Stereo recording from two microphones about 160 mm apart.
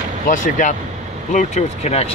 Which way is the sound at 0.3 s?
55° left (ahead or behind).